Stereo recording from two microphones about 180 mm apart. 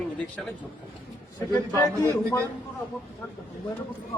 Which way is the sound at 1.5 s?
15° left (ahead or behind).